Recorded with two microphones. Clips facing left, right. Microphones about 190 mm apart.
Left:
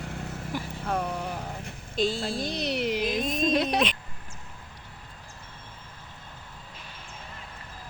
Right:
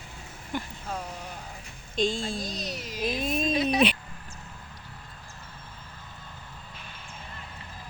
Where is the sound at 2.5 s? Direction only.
65° left (ahead or behind).